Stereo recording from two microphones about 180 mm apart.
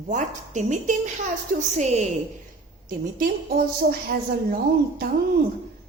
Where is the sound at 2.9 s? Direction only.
55° right (ahead or behind).